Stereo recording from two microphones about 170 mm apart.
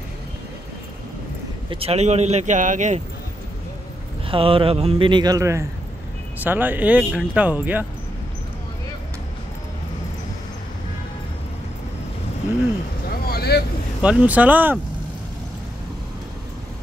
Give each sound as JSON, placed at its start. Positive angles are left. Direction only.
{"t": 1.7, "sound": "a man's voice", "side_deg": -35}
{"t": 4.3, "sound": "a man's voice", "side_deg": -30}
{"t": 13.1, "sound": "vehicle", "side_deg": 65}
{"t": 14.0, "sound": "speech", "side_deg": -10}